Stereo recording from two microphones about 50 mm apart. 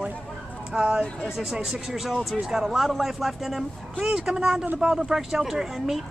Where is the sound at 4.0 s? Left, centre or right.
Centre.